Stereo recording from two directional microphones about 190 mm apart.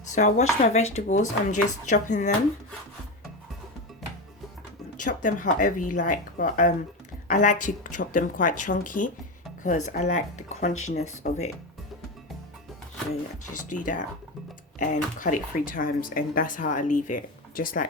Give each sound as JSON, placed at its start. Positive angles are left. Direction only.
{"t": 0.1, "sound": "speech", "side_deg": 40}
{"t": 5.0, "sound": "speech", "side_deg": 45}
{"t": 13.7, "sound": "speech", "side_deg": 45}